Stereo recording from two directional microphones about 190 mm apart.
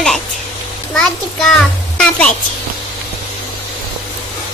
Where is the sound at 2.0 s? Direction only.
5° left (ahead or behind).